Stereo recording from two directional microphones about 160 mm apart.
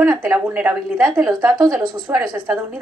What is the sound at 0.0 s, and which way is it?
Speech, 15° right (ahead or behind).